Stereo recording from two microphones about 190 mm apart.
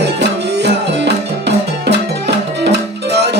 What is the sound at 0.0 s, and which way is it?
Music, 60° right (ahead or behind).